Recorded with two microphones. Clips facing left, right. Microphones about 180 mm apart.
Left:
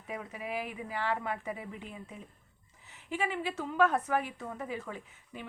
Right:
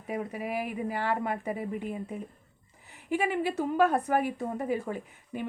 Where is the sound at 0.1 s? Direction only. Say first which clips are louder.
Right 5 dB; 40° right (ahead or behind).